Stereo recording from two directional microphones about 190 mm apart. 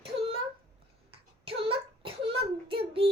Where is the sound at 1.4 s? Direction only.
30° right (ahead or behind).